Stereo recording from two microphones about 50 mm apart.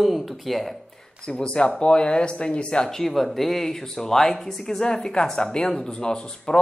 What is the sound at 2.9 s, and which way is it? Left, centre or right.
Speech, centre.